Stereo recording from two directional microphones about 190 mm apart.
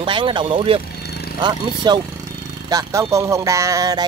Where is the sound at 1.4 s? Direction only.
20° right (ahead or behind).